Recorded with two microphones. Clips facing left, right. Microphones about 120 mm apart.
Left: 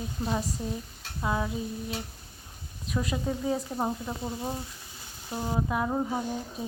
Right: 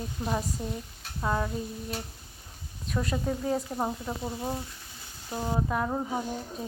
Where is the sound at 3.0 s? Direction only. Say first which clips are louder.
Even; 5° left (ahead or behind).